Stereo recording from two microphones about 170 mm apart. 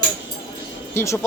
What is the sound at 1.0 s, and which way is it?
Speech, 15° left (ahead or behind).